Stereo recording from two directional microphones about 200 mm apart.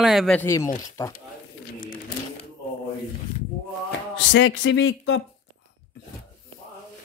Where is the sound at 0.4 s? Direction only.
15° left (ahead or behind).